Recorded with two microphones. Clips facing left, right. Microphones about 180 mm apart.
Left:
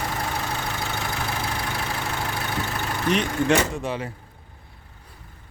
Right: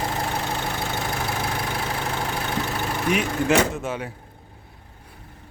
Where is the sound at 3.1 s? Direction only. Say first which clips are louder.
Left 1 dB; 5° right (ahead or behind).